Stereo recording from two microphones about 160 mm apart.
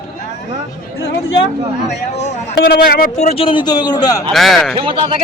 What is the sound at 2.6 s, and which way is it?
Speech, 80° left.